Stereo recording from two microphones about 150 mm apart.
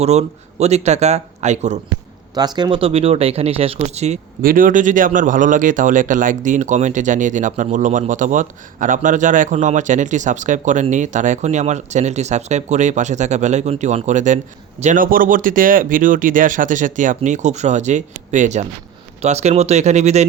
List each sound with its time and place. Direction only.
0.0 s speech: 45° right (ahead or behind)
2.3 s speech: 25° right (ahead or behind); by 4.2 s 45° right (ahead or behind)
4.4 s speech: 65° right (ahead or behind); by 20.2 s 50° right (ahead or behind)